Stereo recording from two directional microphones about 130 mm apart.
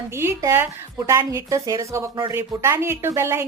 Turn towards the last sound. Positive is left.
turn(degrees=-20)  # may be behind; listen again after turning